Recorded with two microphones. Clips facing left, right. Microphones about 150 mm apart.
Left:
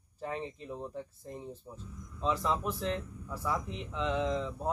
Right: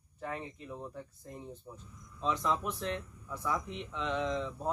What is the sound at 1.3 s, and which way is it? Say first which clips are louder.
Speech: left 2 dB; centre (ahead or behind).